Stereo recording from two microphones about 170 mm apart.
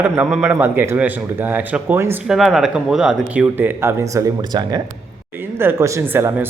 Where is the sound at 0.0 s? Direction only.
5° right (ahead or behind).